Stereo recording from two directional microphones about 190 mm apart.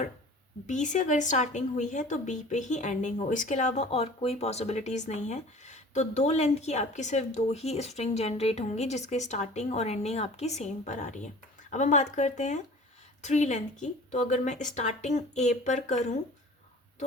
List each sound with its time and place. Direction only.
0.7 s speech: 40° left (ahead or behind)